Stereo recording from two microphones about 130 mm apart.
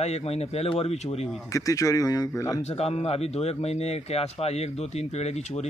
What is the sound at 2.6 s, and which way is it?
Speech, 55° left (ahead or behind).